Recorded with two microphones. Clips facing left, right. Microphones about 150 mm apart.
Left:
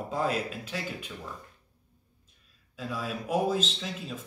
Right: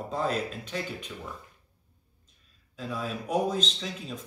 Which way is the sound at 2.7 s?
5° left (ahead or behind).